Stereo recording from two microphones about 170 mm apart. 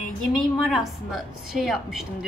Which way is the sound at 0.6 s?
Centre (ahead or behind).